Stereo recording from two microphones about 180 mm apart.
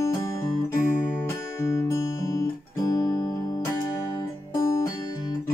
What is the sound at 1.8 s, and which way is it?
Music, 15° left (ahead or behind).